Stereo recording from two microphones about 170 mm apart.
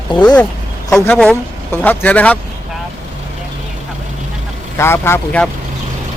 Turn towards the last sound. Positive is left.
turn(degrees=15)  # may be behind; listen again after turning